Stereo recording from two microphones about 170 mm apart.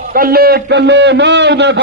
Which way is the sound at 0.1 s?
60° right (ahead or behind).